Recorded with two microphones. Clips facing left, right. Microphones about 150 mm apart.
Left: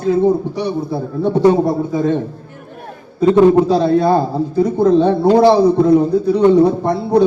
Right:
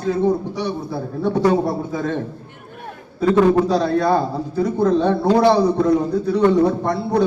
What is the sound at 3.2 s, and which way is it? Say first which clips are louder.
A man's voice: left 5 dB; 20° left (ahead or behind).